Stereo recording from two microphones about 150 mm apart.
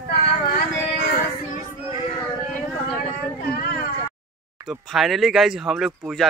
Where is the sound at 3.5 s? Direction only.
90° left.